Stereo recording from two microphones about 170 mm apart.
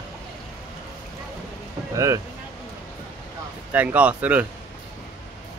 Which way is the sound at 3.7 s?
10° right (ahead or behind).